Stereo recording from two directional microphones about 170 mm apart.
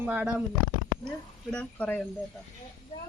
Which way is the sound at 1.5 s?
10° left (ahead or behind).